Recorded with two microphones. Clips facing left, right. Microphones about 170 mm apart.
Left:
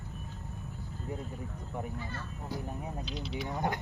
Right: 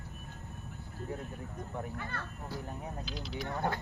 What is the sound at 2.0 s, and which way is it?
Speech, 60° right (ahead or behind).